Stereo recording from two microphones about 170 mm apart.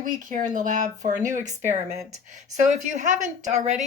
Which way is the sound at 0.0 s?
50° right (ahead or behind).